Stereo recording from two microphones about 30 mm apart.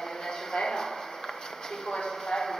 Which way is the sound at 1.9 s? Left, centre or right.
Left.